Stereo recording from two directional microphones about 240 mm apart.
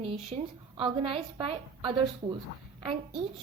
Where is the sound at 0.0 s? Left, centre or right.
Right.